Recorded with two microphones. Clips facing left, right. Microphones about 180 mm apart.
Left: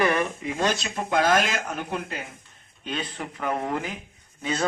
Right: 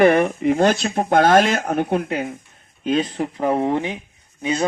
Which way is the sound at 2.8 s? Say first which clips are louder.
Right 12 dB; 40° right (ahead or behind).